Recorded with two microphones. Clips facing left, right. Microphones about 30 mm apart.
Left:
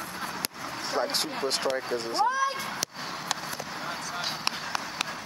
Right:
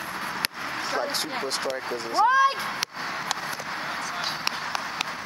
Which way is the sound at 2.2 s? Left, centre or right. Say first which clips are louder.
Right 10 dB; right.